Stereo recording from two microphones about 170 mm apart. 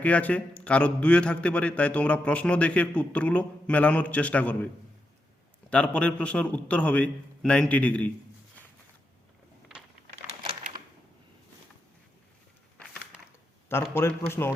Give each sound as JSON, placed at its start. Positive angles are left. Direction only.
{"t": 0.0, "sound": "a man's voice", "side_deg": 10}
{"t": 5.7, "sound": "a man's voice", "side_deg": 5}
{"t": 10.2, "sound": "typing", "side_deg": -30}
{"t": 13.9, "sound": "a man's voice", "side_deg": 15}